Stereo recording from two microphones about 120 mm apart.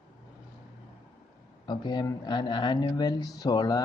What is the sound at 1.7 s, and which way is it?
Speech, 35° left (ahead or behind).